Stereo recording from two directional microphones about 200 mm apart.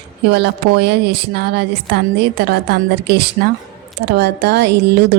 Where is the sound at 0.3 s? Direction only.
55° right (ahead or behind).